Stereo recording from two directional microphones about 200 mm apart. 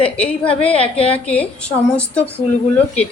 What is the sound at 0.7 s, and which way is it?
Speech, 30° left (ahead or behind).